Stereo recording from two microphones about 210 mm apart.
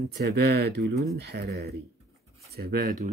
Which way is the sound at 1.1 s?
50° right (ahead or behind).